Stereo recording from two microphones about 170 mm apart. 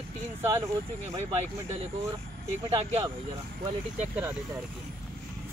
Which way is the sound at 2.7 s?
35° right (ahead or behind).